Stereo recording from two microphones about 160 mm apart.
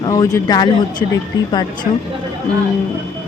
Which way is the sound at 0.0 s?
20° left (ahead or behind).